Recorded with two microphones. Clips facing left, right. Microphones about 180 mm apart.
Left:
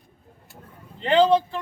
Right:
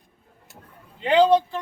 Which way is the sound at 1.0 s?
10° right (ahead or behind).